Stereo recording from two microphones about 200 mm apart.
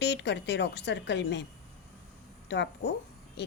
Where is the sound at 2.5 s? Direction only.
60° left (ahead or behind).